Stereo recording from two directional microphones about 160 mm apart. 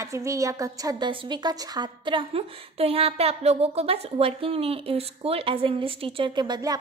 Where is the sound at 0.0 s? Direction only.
20° right (ahead or behind).